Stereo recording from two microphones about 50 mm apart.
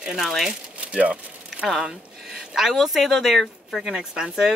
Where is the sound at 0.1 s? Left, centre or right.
Centre.